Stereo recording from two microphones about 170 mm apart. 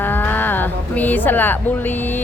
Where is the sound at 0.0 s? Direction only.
10° left (ahead or behind).